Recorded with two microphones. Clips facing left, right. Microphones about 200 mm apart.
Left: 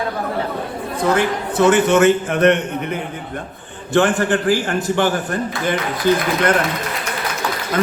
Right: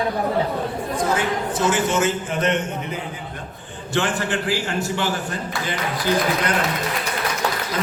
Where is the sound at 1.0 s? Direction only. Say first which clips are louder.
Left 6 dB; 65° left (ahead or behind).